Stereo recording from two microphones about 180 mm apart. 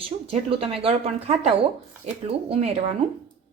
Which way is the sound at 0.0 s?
30° right (ahead or behind).